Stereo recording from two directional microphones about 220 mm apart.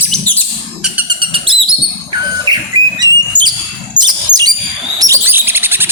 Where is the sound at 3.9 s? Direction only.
20° right (ahead or behind).